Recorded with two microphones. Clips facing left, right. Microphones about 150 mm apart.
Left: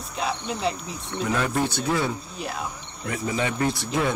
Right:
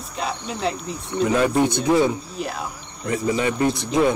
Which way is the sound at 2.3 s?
Centre (ahead or behind).